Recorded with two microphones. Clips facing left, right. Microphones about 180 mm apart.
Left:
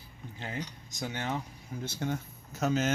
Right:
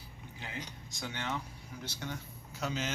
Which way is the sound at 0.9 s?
40° left (ahead or behind).